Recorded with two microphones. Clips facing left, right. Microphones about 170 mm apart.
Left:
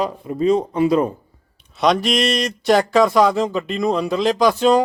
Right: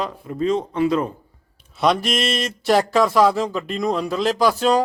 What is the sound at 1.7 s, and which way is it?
Speech, centre (ahead or behind).